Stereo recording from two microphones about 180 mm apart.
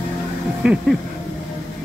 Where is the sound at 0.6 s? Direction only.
5° right (ahead or behind).